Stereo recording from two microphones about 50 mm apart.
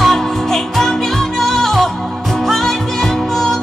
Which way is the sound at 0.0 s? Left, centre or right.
Centre.